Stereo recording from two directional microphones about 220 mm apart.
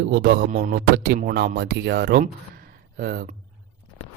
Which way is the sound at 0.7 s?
50° right (ahead or behind).